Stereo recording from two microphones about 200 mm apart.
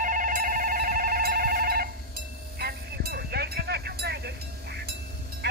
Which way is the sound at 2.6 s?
50° right (ahead or behind).